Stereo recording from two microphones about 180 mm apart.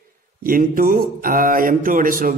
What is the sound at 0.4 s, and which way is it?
Speech, 50° right (ahead or behind).